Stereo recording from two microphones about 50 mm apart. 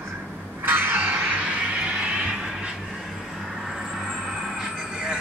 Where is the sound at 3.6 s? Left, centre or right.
Centre.